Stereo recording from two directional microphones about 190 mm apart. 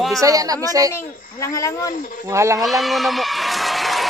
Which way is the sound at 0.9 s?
15° left (ahead or behind).